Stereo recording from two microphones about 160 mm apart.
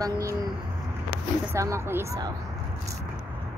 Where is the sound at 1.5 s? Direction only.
15° right (ahead or behind).